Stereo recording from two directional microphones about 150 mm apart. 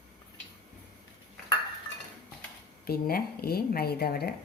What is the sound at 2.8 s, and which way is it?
A woman's voice, 85° left.